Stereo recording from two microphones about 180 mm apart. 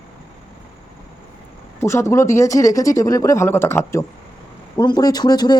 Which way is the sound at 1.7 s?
15° left (ahead or behind).